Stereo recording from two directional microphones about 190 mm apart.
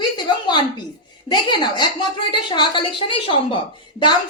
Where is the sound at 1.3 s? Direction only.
25° left (ahead or behind).